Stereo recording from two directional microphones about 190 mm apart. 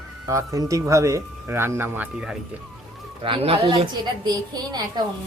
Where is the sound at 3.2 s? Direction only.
30° right (ahead or behind).